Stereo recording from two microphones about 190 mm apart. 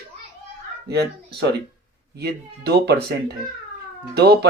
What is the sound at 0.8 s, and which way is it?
Speech, 60° right (ahead or behind).